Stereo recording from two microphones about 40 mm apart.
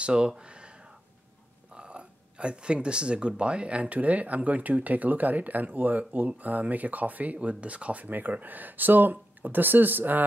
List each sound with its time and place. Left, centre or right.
0.0 s speech: right